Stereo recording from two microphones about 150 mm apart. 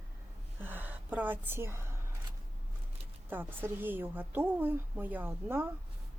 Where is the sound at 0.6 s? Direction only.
10° right (ahead or behind).